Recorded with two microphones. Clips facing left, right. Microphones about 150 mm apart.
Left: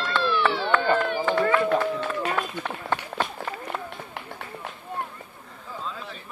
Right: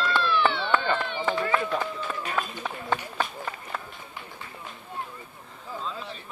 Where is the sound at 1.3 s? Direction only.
65° left (ahead or behind).